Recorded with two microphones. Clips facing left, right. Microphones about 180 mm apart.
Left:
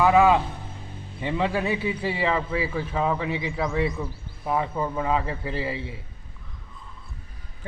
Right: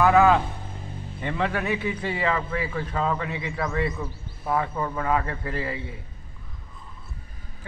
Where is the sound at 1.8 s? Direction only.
10° left (ahead or behind).